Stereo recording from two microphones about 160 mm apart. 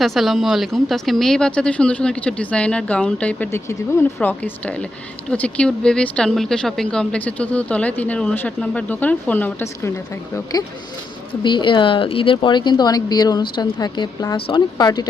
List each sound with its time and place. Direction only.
0.0 s speech: centre (ahead or behind)
11.3 s speech: 30° left (ahead or behind)